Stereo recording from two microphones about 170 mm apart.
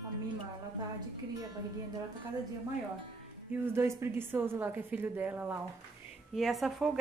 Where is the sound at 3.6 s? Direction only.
15° right (ahead or behind).